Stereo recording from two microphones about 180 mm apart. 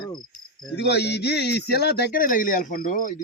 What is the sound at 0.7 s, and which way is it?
A man's voice, 65° left (ahead or behind).